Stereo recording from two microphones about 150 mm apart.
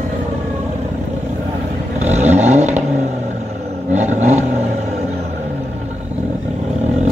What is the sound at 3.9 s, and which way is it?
Vehicle, 50° right (ahead or behind).